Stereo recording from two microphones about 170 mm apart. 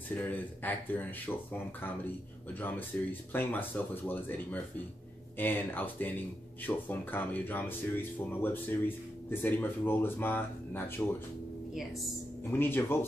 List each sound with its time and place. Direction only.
0.1 s speech: 10° left (ahead or behind)
12.4 s speech: 10° left (ahead or behind)